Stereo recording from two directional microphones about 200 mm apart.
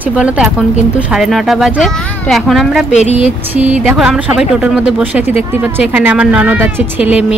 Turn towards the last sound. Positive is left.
turn(degrees=-5)  # may be behind; listen again after turning